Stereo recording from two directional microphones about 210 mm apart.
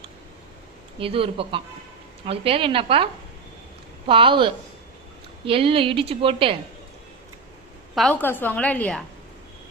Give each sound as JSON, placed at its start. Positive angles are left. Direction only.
{"t": 0.9, "sound": "a woman's voice", "side_deg": -25}
{"t": 7.9, "sound": "a woman's voice", "side_deg": 5}